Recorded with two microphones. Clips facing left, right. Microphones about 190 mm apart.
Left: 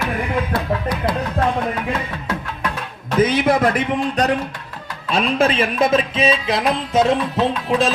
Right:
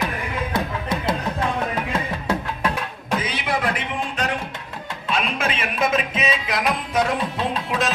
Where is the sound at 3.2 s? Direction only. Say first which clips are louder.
Left 12 dB; 45° left (ahead or behind).